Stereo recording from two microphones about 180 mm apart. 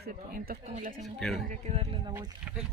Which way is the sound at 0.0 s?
55° right (ahead or behind).